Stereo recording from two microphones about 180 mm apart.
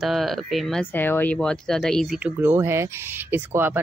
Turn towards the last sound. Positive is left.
turn(degrees=-10)  # may be behind; listen again after turning